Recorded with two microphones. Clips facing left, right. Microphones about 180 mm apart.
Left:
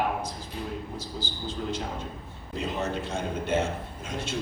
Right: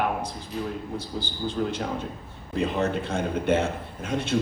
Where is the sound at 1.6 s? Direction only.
60° right (ahead or behind).